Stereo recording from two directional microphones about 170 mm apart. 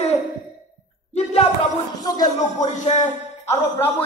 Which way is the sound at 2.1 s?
20° left (ahead or behind).